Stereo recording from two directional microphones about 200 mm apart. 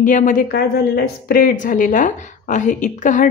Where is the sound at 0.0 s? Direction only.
40° left (ahead or behind).